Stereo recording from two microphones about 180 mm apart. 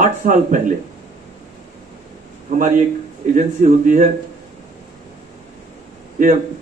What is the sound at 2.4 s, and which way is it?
Speech, 45° right (ahead or behind).